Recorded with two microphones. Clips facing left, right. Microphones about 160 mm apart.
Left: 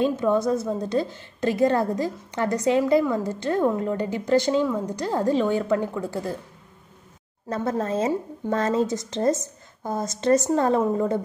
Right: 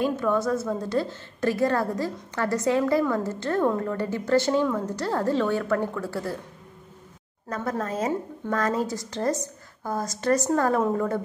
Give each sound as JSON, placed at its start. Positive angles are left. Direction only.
{"t": 0.0, "sound": "a woman's voice", "side_deg": 20}
{"t": 7.4, "sound": "a woman's voice", "side_deg": 25}